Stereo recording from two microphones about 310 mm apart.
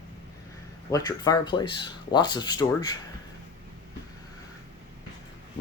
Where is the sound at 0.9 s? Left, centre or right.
Centre.